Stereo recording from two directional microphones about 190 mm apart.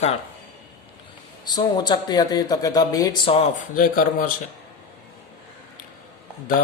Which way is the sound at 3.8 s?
45° left (ahead or behind).